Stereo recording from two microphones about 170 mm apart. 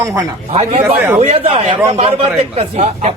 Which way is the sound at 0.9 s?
10° right (ahead or behind).